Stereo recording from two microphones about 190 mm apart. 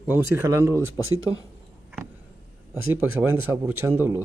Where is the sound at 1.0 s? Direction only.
90° right.